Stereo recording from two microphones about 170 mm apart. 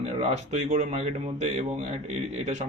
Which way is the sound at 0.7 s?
40° right (ahead or behind).